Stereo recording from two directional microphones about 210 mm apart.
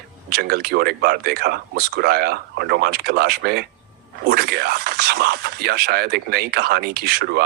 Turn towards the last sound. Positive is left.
turn(degrees=-50)  # may be behind; listen again after turning